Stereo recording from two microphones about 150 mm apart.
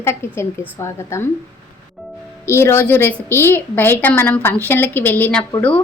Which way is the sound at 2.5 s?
15° left (ahead or behind).